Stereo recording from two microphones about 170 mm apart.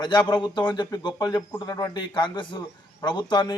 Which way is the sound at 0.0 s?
25° left (ahead or behind).